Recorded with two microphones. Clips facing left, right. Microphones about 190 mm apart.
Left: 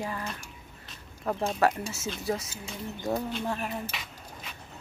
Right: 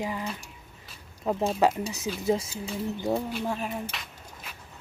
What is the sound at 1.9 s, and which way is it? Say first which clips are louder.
Speech: right 5 dB; 15° right (ahead or behind).